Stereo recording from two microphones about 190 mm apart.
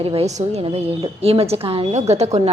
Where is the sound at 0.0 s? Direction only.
30° right (ahead or behind).